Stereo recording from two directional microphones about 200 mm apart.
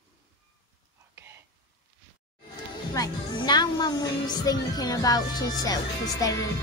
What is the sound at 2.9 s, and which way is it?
Speech, 20° left (ahead or behind).